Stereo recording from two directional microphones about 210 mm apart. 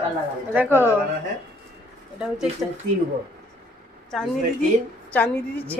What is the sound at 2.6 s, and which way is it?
Speech, 5° right (ahead or behind).